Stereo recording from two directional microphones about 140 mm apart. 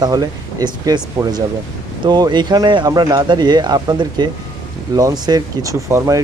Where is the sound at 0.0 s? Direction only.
30° right (ahead or behind).